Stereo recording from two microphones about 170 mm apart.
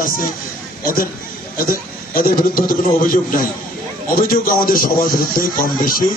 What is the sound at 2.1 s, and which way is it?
A man's voice, 60° left (ahead or behind).